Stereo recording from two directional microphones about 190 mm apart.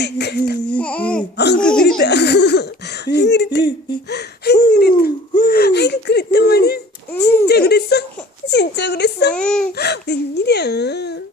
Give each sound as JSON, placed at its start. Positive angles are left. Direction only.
{"t": 0.0, "sound": "speech", "side_deg": 60}
{"t": 0.8, "sound": "speech", "side_deg": 5}
{"t": 2.0, "sound": "speech", "side_deg": 60}
{"t": 9.3, "sound": "speech", "side_deg": 5}
{"t": 9.7, "sound": "speech", "side_deg": 60}